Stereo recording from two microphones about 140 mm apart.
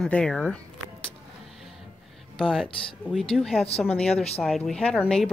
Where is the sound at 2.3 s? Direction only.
Centre (ahead or behind).